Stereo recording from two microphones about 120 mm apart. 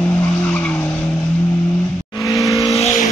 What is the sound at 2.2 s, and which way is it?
Vehicle, 30° left (ahead or behind).